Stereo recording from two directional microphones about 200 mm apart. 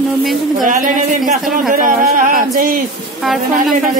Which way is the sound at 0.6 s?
40° right (ahead or behind).